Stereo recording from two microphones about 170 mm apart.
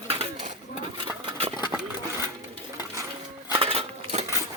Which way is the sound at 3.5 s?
35° right (ahead or behind).